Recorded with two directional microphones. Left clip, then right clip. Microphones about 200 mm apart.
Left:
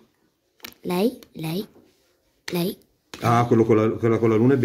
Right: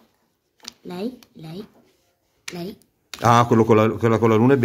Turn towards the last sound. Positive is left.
turn(degrees=-45)  # may be behind; listen again after turning